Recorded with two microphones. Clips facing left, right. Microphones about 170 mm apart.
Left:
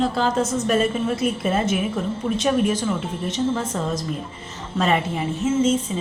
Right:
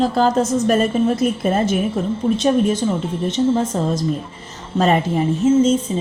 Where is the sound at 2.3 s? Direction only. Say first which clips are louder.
Right 2 dB; 30° right (ahead or behind).